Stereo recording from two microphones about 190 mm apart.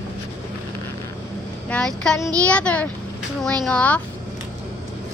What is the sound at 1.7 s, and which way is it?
A child's voice, 5° left (ahead or behind).